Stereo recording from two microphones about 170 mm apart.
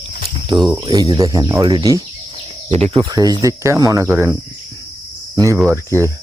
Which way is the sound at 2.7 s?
35° right (ahead or behind).